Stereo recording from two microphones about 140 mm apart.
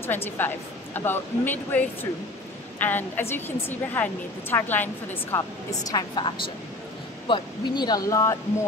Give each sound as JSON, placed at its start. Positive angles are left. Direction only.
{"t": 0.0, "sound": "a woman's voice", "side_deg": 15}
{"t": 5.9, "sound": "a woman's voice", "side_deg": 30}